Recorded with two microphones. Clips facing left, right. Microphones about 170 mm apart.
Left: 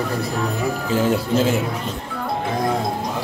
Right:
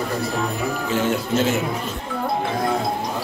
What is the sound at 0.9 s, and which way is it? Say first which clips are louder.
Speech: left 3 dB; 35° left (ahead or behind).